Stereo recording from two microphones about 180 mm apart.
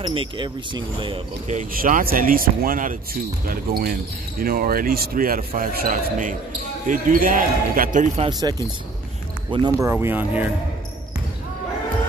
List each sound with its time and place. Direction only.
0.0 s speech: 25° right (ahead or behind)
1.5 s speech: 50° right (ahead or behind)
8.2 s speech: 25° right (ahead or behind)